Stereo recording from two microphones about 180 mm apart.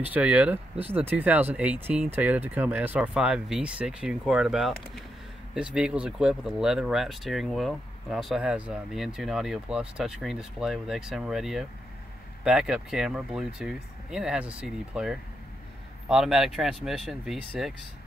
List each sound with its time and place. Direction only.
0.0 s speech: 10° right (ahead or behind)